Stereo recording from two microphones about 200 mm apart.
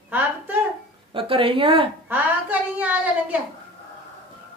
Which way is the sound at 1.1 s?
25° right (ahead or behind).